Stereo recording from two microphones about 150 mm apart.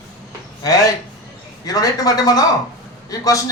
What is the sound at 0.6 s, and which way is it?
Speech, 25° left (ahead or behind).